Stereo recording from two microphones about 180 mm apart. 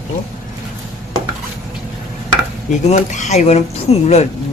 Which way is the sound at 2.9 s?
40° left (ahead or behind).